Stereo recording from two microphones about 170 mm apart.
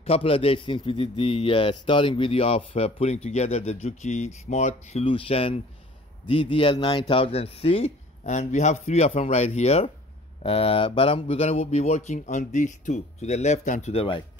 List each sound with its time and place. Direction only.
0.0 s a man's voice: 35° left (ahead or behind)